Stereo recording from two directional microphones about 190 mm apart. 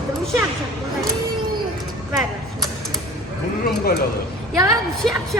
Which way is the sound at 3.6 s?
50° left (ahead or behind).